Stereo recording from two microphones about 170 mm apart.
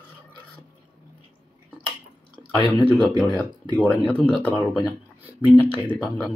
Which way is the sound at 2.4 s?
25° left (ahead or behind).